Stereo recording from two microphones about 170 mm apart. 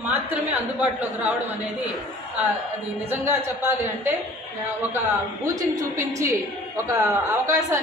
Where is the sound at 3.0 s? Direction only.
15° right (ahead or behind).